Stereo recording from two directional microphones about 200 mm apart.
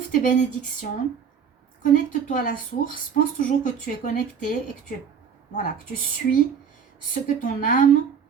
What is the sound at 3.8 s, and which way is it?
Speech, 40° left (ahead or behind).